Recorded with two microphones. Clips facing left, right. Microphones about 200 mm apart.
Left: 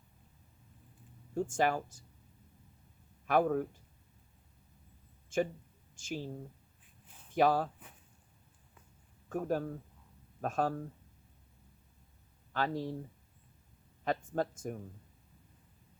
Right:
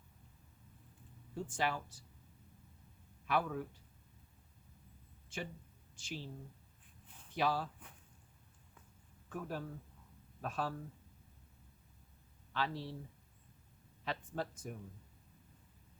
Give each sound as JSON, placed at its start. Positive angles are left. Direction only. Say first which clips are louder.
{"t": 1.4, "sound": "speech", "louder": "left 7 dB", "side_deg": 45}
{"t": 3.2, "sound": "speech", "louder": "left 8 dB", "side_deg": 50}
{"t": 5.3, "sound": "speech", "louder": "left 12 dB", "side_deg": 45}
{"t": 9.3, "sound": "speech", "louder": "left 9 dB", "side_deg": 45}
{"t": 12.5, "sound": "speech", "louder": "left 5 dB", "side_deg": 45}
{"t": 14.0, "sound": "speech", "louder": "left 7 dB", "side_deg": 45}